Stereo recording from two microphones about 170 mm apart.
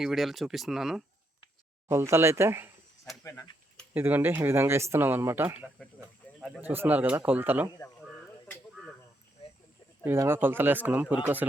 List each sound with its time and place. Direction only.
0.0 s speech: centre (ahead or behind)
1.9 s speech: 15° right (ahead or behind)
3.9 s speech: 10° right (ahead or behind)
6.2 s a sound: 10° left (ahead or behind)
6.6 s speech: 10° right (ahead or behind)
10.0 s speech: 15° right (ahead or behind)